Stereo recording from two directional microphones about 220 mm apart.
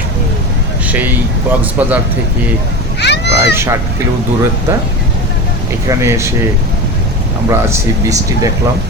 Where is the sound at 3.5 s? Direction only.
10° right (ahead or behind).